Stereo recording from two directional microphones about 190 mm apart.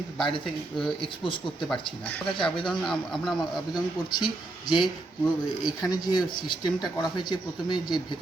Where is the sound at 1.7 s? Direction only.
5° left (ahead or behind).